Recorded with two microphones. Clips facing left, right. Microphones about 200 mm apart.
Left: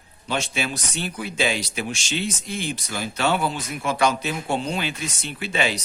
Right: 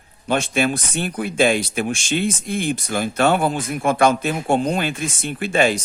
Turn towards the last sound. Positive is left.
turn(degrees=-50)  # may be behind; listen again after turning